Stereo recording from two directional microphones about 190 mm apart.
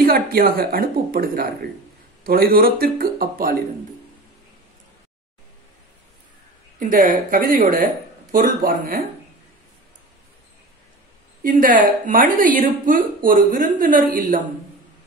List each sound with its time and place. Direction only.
0.0 s a woman's voice: 50° right (ahead or behind)
6.8 s a woman's voice: 45° right (ahead or behind)
11.4 s a woman's voice: 45° right (ahead or behind)